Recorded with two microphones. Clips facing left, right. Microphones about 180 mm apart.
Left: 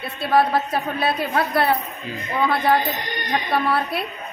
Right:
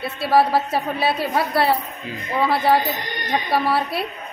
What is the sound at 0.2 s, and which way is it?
A woman's voice, 5° right (ahead or behind).